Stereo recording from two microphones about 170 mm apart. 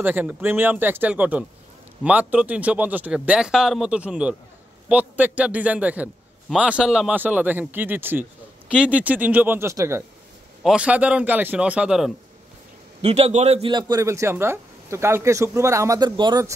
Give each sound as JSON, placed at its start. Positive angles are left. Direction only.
{"t": 0.0, "sound": "a man's voice", "side_deg": -10}
{"t": 10.6, "sound": "a man's voice", "side_deg": -5}
{"t": 13.0, "sound": "a man's voice", "side_deg": -40}